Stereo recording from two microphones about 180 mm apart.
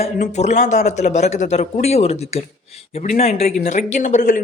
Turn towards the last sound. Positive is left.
turn(degrees=45)  # may be behind; listen again after turning